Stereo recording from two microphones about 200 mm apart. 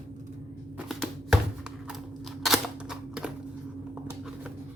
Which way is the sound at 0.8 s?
Centre (ahead or behind).